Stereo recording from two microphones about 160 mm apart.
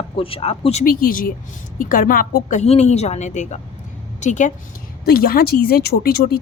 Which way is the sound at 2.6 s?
40° left (ahead or behind).